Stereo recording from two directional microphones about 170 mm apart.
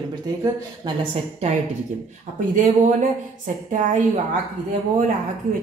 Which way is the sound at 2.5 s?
50° right (ahead or behind).